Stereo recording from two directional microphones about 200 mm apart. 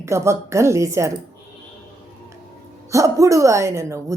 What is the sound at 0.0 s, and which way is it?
A woman's voice, 15° right (ahead or behind).